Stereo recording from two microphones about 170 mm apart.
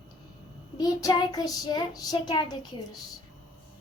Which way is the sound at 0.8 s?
20° left (ahead or behind).